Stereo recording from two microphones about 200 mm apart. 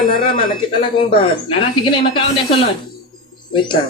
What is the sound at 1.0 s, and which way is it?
A man's voice, 25° left (ahead or behind).